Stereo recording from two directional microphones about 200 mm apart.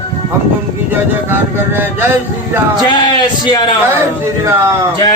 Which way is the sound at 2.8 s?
20° left (ahead or behind).